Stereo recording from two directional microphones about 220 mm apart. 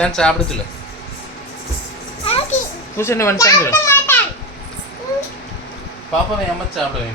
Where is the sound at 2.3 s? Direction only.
25° left (ahead or behind).